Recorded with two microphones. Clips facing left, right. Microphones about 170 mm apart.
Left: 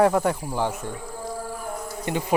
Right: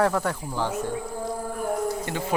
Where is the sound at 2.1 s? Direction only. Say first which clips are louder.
Left 4 dB; 20° left (ahead or behind).